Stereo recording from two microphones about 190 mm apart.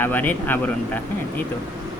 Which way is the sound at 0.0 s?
10° left (ahead or behind).